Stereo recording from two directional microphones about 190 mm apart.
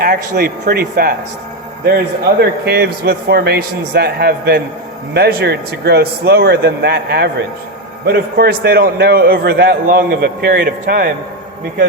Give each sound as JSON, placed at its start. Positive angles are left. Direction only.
{"t": 0.0, "sound": "a man's voice", "side_deg": -55}
{"t": 2.4, "sound": "a man's voice", "side_deg": -55}